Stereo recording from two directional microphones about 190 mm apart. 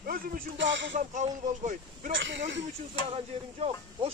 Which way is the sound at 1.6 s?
40° right (ahead or behind).